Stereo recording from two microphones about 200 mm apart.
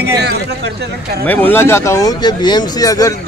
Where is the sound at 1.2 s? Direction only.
10° left (ahead or behind).